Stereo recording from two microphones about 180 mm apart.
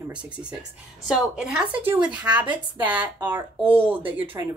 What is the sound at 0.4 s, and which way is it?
Speech, 5° right (ahead or behind).